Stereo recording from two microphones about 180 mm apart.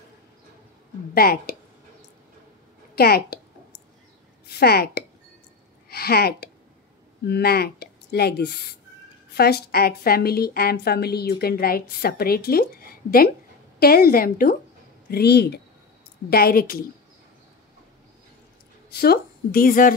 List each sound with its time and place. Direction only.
1.1 s a woman's voice: 55° left (ahead or behind)
3.0 s a woman's voice: 60° left (ahead or behind)
4.5 s a woman's voice: 60° left (ahead or behind)
5.9 s a sound: 60° left (ahead or behind)
7.2 s a woman's voice: 65° left (ahead or behind)
13.7 s a woman's voice: 55° left (ahead or behind)
18.9 s speech: 60° left (ahead or behind)